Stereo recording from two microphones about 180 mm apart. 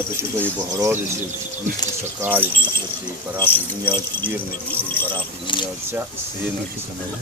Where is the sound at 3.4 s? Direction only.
10° left (ahead or behind).